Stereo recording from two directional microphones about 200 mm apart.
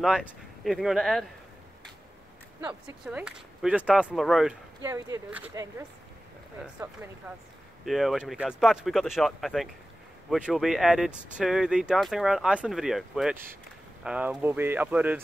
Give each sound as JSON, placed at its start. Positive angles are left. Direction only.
{"t": 0.0, "sound": "speech", "side_deg": 0}
{"t": 2.6, "sound": "speech", "side_deg": -10}
{"t": 4.8, "sound": "speech", "side_deg": -15}
{"t": 7.8, "sound": "speech", "side_deg": 0}